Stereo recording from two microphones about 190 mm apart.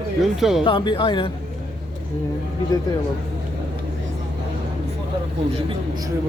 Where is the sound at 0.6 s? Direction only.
25° left (ahead or behind).